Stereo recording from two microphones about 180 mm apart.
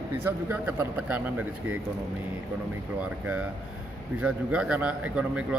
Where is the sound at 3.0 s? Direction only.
5° right (ahead or behind).